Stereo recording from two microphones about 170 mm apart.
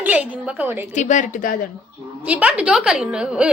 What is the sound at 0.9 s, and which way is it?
Speech, 45° left (ahead or behind).